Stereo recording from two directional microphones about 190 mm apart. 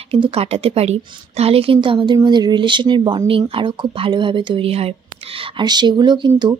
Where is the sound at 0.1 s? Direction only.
30° right (ahead or behind).